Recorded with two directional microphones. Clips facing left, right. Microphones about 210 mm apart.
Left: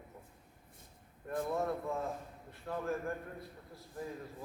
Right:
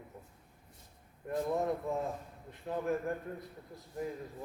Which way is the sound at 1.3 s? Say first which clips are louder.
Right 2 dB; 15° right (ahead or behind).